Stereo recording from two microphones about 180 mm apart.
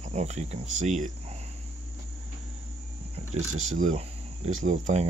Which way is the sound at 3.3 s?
40° right (ahead or behind).